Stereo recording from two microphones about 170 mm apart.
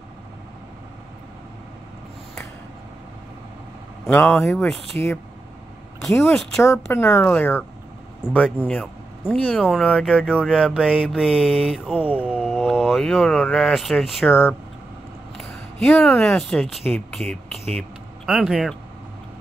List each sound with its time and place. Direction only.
4.3 s speech: centre (ahead or behind)
6.0 s speech: 5° left (ahead or behind)
6.6 s speech: 15° left (ahead or behind); by 14.2 s centre (ahead or behind)
14.2 s speech: 15° left (ahead or behind)
15.3 s speech: centre (ahead or behind)
16.8 s speech: 10° left (ahead or behind)